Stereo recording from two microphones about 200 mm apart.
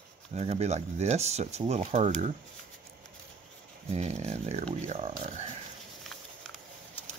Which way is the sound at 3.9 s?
35° right (ahead or behind).